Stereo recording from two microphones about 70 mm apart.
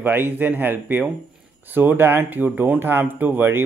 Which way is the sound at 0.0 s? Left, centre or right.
Right.